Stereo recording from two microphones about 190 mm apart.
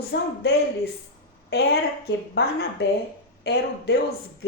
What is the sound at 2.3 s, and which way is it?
Speech, 60° left (ahead or behind).